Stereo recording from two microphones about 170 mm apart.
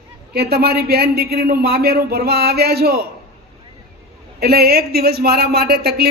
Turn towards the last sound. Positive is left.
turn(degrees=-65)  # may be behind; listen again after turning